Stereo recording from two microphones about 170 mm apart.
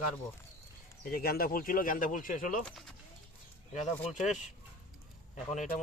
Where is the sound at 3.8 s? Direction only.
45° left (ahead or behind).